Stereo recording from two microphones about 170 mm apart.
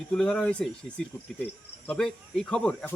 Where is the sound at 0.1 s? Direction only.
5° left (ahead or behind).